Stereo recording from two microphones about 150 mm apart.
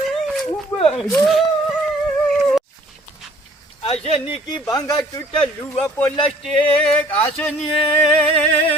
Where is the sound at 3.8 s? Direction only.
40° left (ahead or behind).